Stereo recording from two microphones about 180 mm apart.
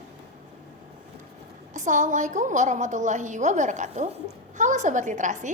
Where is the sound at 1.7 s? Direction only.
45° right (ahead or behind).